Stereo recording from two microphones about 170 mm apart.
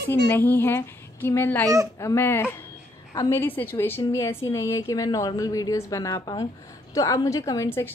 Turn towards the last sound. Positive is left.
turn(degrees=15)  # may be behind; listen again after turning